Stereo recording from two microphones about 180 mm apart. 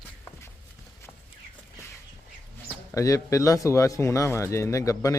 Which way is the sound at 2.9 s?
15° left (ahead or behind).